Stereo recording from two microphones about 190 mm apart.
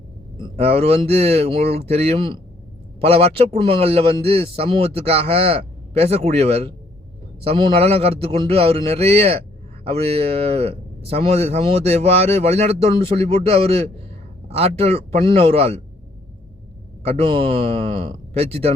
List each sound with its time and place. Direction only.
0.3 s a man's voice: 30° right (ahead or behind)
17.0 s a man's voice: 35° right (ahead or behind)